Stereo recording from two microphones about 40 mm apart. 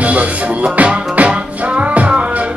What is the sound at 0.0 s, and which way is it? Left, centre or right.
Music, right.